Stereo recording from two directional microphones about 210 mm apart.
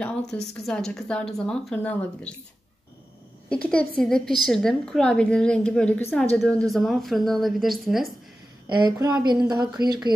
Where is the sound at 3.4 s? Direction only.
5° left (ahead or behind).